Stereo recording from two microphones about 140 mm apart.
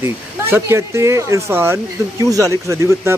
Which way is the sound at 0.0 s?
20° right (ahead or behind).